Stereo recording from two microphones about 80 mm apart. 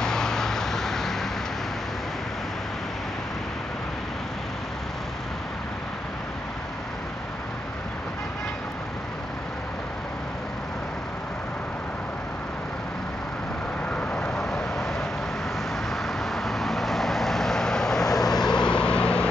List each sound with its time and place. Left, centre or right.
0.0 s vehicle: centre
13.8 s vehicle: centre
14.3 s vehicle: centre